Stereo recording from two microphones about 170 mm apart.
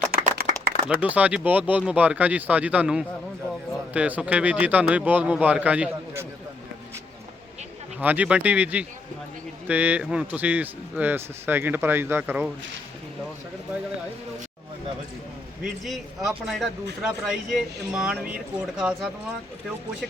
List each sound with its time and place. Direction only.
0.1 s a sound: 65° right (ahead or behind)
0.9 s speech: 10° right (ahead or behind)
7.9 s speech: 10° right (ahead or behind)
15.6 s speech: centre (ahead or behind)